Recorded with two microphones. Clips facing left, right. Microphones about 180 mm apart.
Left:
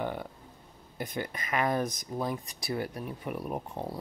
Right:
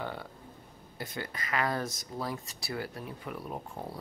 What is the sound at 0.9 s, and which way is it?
Speech, 15° left (ahead or behind).